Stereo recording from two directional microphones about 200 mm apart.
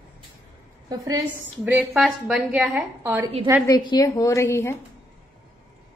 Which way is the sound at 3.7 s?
20° left (ahead or behind).